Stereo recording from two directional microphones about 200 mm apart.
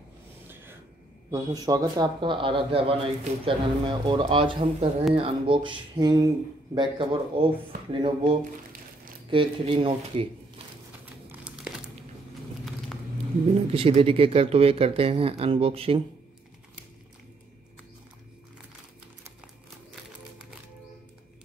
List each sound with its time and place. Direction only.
1.3 s speech: 15° right (ahead or behind)
9.3 s speech: 25° right (ahead or behind)
11.2 s crumpling: 5° right (ahead or behind)
13.7 s speech: 30° right (ahead or behind)